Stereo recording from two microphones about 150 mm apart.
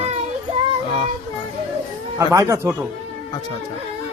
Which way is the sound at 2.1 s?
20° right (ahead or behind).